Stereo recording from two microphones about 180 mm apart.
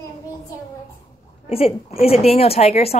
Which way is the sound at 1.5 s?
35° left (ahead or behind).